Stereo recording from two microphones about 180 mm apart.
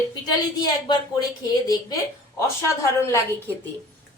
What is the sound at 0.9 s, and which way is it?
A woman's voice, 20° left (ahead or behind).